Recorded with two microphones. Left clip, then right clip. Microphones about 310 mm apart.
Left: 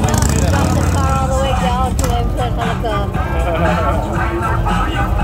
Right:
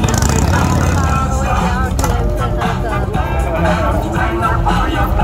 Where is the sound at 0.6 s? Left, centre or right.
Centre.